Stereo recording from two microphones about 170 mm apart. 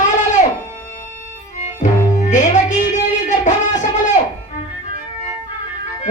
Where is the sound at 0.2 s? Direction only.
45° left (ahead or behind).